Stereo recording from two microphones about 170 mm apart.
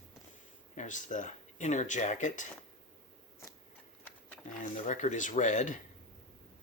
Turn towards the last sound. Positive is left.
turn(degrees=50)  # may be behind; listen again after turning